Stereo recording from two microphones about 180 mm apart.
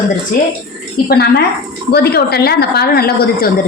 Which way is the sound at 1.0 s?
60° left (ahead or behind).